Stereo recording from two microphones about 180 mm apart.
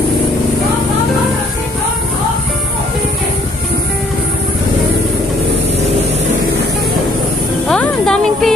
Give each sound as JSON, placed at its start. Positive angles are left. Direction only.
{"t": 7.6, "sound": "music", "side_deg": 5}